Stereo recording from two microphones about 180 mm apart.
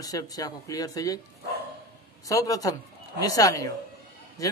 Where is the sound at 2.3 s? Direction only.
20° left (ahead or behind).